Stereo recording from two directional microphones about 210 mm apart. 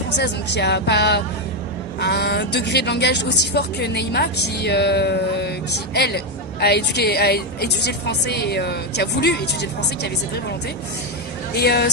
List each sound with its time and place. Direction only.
0.2 s a woman's voice: 55° left (ahead or behind)
11.5 s a woman's voice: 50° left (ahead or behind)